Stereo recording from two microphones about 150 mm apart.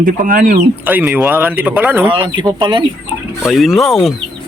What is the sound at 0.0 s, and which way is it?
Speech, 65° right (ahead or behind).